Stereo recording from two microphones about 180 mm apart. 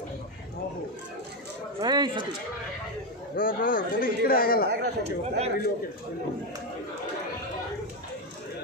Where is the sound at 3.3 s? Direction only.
50° left (ahead or behind).